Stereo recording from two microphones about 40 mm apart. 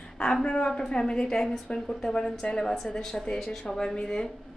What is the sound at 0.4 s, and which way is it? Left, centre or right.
A woman's voice, left.